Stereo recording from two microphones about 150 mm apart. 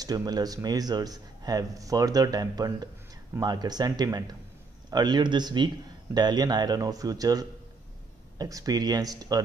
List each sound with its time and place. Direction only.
0.0 s speech: 25° right (ahead or behind)